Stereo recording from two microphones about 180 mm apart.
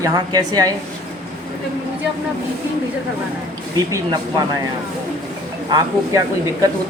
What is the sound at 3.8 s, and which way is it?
Speech, 20° right (ahead or behind).